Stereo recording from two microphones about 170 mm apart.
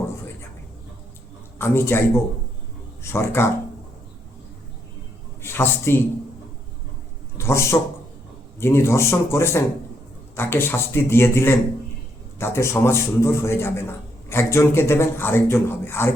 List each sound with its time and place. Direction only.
1.5 s a man's voice: 15° left (ahead or behind)
5.4 s a man's voice: 15° left (ahead or behind)
7.3 s a man's voice: 15° left (ahead or behind)